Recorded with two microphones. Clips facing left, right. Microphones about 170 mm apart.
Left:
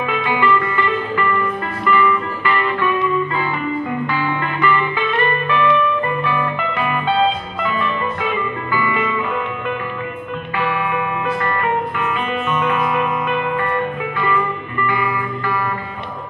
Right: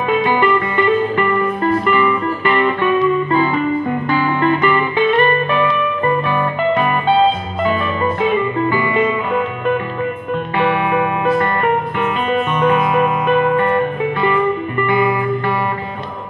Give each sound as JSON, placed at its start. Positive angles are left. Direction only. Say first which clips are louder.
{"t": 0.4, "sound": "music", "louder": "right 3 dB", "side_deg": -30}
{"t": 4.4, "sound": "music", "louder": "right 4 dB", "side_deg": -30}
{"t": 6.2, "sound": "music", "louder": "right 4 dB", "side_deg": -30}
{"t": 8.7, "sound": "music", "louder": "right 4 dB", "side_deg": -30}
{"t": 10.6, "sound": "music", "louder": "right 5 dB", "side_deg": -40}
{"t": 12.5, "sound": "music", "louder": "right 4 dB", "side_deg": -30}
{"t": 14.2, "sound": "music", "louder": "right 5 dB", "side_deg": -30}